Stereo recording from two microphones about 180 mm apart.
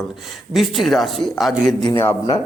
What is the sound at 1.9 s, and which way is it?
Speech, 15° left (ahead or behind).